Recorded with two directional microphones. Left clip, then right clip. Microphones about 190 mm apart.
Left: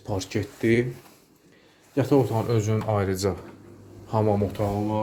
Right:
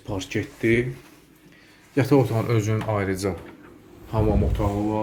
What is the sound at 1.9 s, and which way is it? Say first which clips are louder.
Speech: right 2 dB; centre (ahead or behind).